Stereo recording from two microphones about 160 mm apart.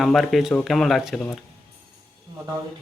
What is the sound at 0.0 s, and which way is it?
Speech, centre (ahead or behind).